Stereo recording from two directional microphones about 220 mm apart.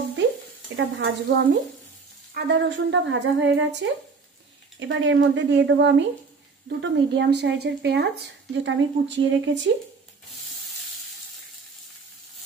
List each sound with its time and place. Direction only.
0.7 s speech: 55° right (ahead or behind)